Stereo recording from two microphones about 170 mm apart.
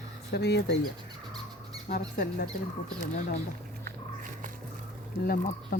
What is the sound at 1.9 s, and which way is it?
Speech, 60° left (ahead or behind).